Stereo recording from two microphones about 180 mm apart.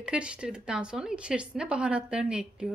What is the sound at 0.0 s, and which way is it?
Speech, 5° right (ahead or behind).